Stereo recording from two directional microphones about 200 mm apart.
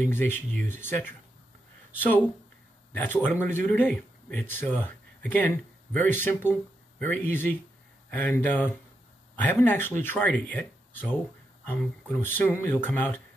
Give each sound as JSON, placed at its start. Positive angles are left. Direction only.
{"t": 0.1, "sound": "speech", "side_deg": 10}